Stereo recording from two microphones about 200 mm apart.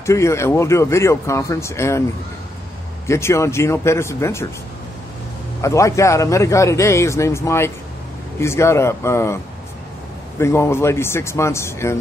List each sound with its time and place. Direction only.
0.0 s a man's voice: 15° left (ahead or behind)
3.1 s a man's voice: 15° left (ahead or behind)
5.6 s a man's voice: 15° left (ahead or behind)
10.4 s a man's voice: 15° left (ahead or behind)